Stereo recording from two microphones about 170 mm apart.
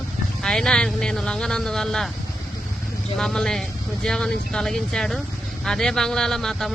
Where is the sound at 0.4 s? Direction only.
5° left (ahead or behind).